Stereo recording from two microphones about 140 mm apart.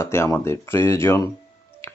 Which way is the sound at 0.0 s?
20° left (ahead or behind).